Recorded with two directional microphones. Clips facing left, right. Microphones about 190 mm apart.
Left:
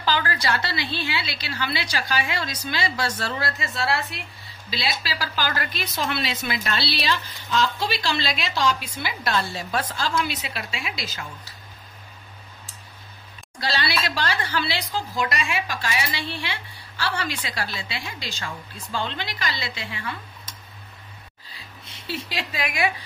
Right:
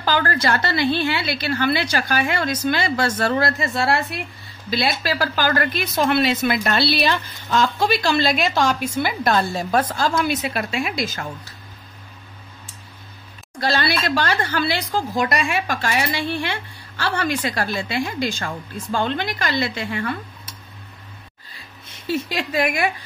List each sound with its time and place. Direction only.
0.0 s a woman's voice: 50° right (ahead or behind)
13.6 s a woman's voice: 50° right (ahead or behind)
22.0 s a woman's voice: 50° right (ahead or behind)